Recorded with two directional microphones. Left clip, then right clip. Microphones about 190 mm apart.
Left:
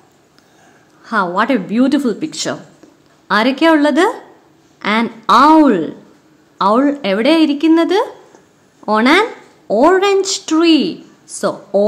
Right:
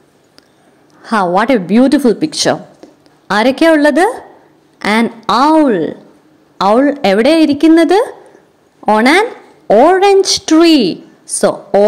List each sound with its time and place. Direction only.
1.0 s a woman's voice: 25° right (ahead or behind)